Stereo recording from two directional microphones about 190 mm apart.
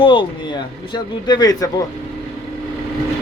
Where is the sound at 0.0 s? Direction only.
25° left (ahead or behind).